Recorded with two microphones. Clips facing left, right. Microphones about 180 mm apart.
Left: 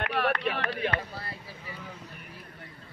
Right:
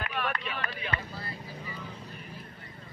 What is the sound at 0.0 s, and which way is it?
Vehicle, 75° left (ahead or behind).